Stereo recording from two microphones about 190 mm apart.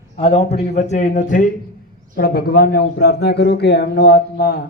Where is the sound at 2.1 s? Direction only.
55° left (ahead or behind).